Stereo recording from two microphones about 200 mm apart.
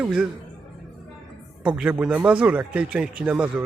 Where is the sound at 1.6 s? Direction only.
5° right (ahead or behind).